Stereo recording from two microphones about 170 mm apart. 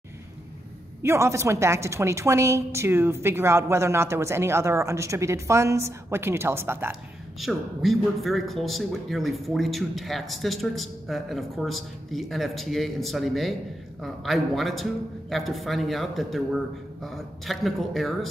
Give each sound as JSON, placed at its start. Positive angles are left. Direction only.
{"t": 1.0, "sound": "a woman's voice", "side_deg": -15}
{"t": 7.3, "sound": "a man's voice", "side_deg": 0}